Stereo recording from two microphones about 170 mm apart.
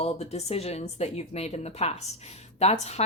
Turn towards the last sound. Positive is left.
turn(degrees=40)  # may be behind; listen again after turning